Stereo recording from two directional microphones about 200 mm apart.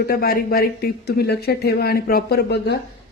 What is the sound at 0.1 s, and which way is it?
Speech, 50° left (ahead or behind).